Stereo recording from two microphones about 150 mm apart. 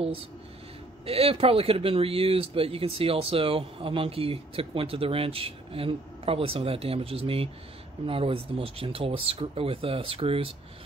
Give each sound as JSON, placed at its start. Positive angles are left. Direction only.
{"t": 1.0, "sound": "speech", "side_deg": -40}